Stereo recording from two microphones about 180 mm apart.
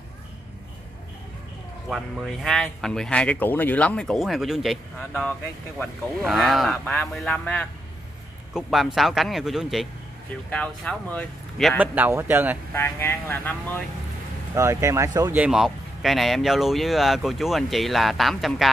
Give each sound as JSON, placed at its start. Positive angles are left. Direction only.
{"t": 1.9, "sound": "speech", "side_deg": 0}
{"t": 11.8, "sound": "speech", "side_deg": -10}
{"t": 12.7, "sound": "speech", "side_deg": 15}
{"t": 14.5, "sound": "speech", "side_deg": -15}
{"t": 15.4, "sound": "speech", "side_deg": 0}